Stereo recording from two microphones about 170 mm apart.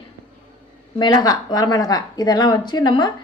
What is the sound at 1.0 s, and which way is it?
A woman's voice, 25° left (ahead or behind).